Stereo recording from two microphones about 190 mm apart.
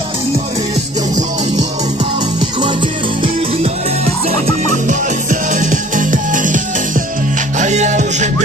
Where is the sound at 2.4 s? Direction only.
25° right (ahead or behind).